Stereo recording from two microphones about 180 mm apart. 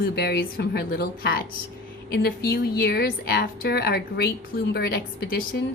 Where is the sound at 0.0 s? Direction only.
65° left (ahead or behind).